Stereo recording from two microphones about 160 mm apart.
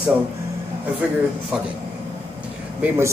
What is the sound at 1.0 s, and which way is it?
Speech, 5° right (ahead or behind).